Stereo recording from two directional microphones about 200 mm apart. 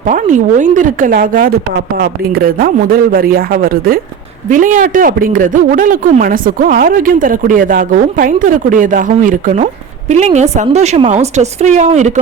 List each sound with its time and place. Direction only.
0.1 s a woman's voice: 40° right (ahead or behind)